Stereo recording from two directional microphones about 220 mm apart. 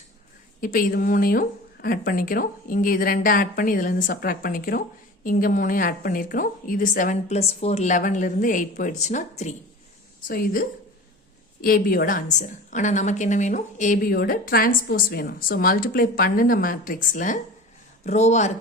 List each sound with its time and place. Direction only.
0.6 s a woman's voice: 40° left (ahead or behind)